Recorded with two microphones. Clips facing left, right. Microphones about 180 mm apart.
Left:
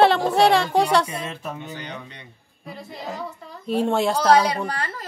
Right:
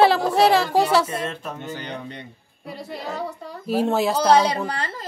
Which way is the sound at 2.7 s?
70° right (ahead or behind).